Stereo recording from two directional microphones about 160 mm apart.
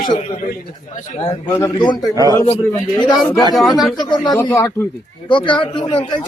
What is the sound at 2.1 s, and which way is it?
Speech, 25° right (ahead or behind).